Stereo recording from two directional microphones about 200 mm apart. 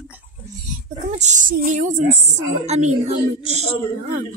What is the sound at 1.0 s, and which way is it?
A woman's voice, 35° right (ahead or behind).